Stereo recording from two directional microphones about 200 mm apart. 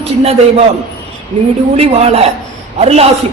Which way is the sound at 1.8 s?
30° right (ahead or behind).